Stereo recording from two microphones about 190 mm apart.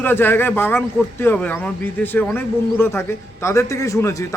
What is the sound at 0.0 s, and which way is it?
A man's voice, 10° left (ahead or behind).